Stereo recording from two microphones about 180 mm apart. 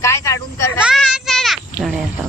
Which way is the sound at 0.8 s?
5° right (ahead or behind).